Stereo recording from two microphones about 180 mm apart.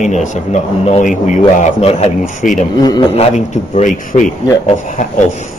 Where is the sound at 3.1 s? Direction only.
40° left (ahead or behind).